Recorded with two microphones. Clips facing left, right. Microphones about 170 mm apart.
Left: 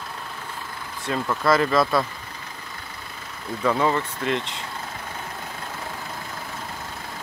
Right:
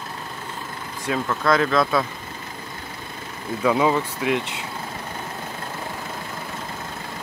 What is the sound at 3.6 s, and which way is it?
Speech, 10° right (ahead or behind).